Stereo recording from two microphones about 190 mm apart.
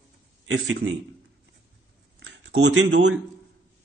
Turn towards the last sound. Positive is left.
turn(degrees=-65)  # may be behind; listen again after turning